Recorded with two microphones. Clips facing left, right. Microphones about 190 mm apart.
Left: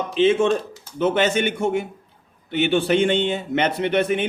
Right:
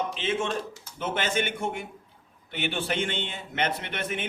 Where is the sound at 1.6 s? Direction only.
70° left (ahead or behind).